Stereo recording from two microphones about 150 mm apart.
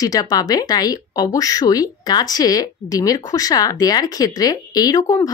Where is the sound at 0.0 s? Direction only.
25° left (ahead or behind).